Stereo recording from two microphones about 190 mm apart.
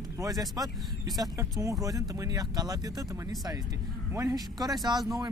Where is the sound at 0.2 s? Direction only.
20° right (ahead or behind).